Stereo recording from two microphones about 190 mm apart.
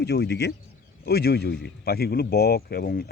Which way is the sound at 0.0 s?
60° left (ahead or behind).